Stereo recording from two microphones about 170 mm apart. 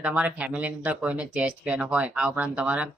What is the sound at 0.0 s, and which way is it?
Speech, 10° right (ahead or behind).